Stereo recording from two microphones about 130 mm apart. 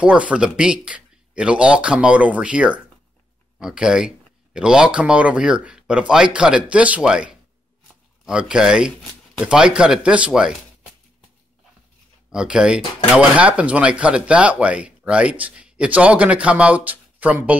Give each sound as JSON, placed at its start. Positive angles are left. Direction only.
{"t": 0.0, "sound": "speech", "side_deg": -10}
{"t": 12.3, "sound": "speech", "side_deg": -5}